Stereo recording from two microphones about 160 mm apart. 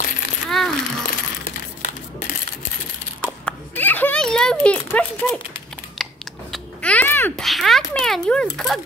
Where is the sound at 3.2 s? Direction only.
10° left (ahead or behind).